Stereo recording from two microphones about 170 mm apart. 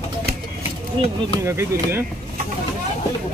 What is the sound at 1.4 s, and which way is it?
Speech, 15° right (ahead or behind).